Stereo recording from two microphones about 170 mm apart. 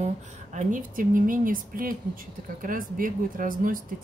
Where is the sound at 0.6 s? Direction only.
50° right (ahead or behind).